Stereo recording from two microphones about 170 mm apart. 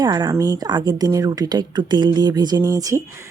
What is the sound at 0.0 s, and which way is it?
Speech, 25° right (ahead or behind).